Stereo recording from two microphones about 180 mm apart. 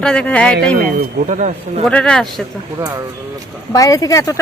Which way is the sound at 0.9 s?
50° right (ahead or behind).